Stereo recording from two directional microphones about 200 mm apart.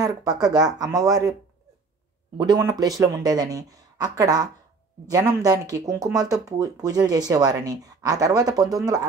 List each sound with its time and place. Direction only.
0.0 s speech: 20° right (ahead or behind)
2.3 s speech: 20° right (ahead or behind)